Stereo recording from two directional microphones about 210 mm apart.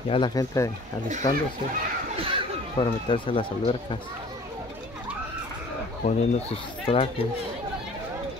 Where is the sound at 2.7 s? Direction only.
25° left (ahead or behind).